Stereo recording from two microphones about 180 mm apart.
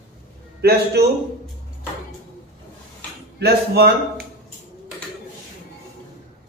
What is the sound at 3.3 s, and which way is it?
Speech, 60° right (ahead or behind).